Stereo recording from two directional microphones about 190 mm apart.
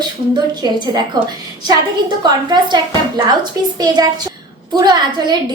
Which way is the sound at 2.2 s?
25° right (ahead or behind).